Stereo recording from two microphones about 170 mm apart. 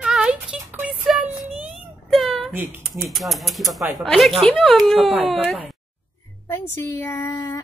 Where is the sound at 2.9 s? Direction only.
Centre (ahead or behind).